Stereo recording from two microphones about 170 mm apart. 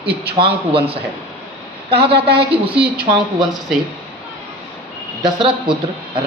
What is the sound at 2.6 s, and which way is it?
Speech, 30° right (ahead or behind).